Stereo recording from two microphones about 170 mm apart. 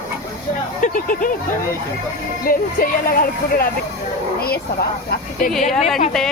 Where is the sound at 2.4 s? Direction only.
55° left (ahead or behind).